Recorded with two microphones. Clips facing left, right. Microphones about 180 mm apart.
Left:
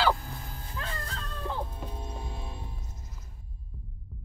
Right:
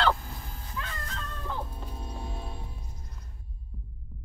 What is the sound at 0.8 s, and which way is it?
Dog, 35° left (ahead or behind).